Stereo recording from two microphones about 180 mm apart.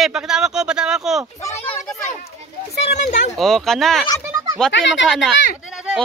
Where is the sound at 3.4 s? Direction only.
Centre (ahead or behind).